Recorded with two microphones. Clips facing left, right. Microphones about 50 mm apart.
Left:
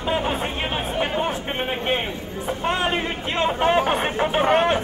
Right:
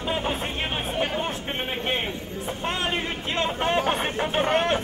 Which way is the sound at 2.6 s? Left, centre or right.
Centre.